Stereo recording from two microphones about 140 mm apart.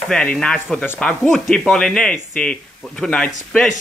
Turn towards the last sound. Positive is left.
turn(degrees=5)  # may be behind; listen again after turning